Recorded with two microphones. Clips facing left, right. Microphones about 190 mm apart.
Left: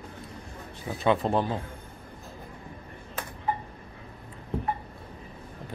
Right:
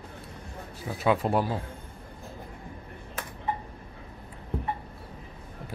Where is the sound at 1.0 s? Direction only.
5° right (ahead or behind).